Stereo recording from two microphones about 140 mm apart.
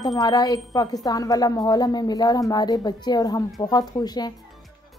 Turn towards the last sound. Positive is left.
turn(degrees=30)  # may be behind; listen again after turning